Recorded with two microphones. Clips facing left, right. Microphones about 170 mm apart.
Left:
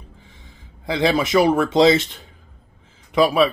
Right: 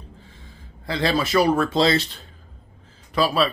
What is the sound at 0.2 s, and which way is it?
A man's voice, 15° left (ahead or behind).